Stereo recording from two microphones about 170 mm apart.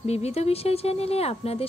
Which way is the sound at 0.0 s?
40° left (ahead or behind).